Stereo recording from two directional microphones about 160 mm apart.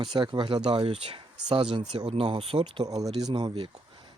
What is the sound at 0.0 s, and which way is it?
Speech, 30° right (ahead or behind).